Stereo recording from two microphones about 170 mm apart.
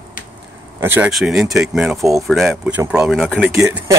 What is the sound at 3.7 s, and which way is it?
Speech, 15° right (ahead or behind).